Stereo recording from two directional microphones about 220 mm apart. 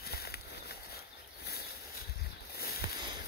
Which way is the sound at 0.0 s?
45° left (ahead or behind).